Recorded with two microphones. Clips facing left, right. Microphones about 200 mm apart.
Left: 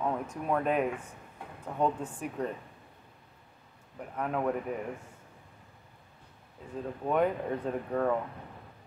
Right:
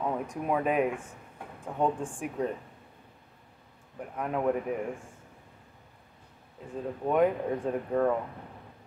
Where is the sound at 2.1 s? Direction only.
10° right (ahead or behind).